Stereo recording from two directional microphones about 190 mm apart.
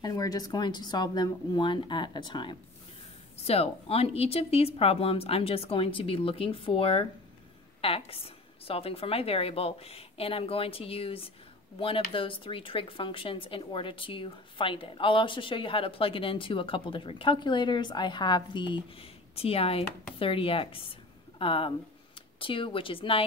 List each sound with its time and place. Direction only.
0.0 s a woman's voice: 20° left (ahead or behind)